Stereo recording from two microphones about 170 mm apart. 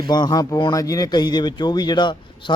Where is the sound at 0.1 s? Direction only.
25° left (ahead or behind).